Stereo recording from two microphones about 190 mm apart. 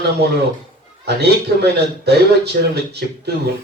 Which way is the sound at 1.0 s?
60° right (ahead or behind).